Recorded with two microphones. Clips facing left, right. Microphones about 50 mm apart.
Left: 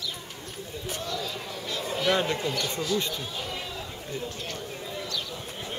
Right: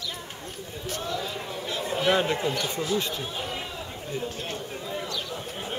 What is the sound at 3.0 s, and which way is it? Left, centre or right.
Speech, centre.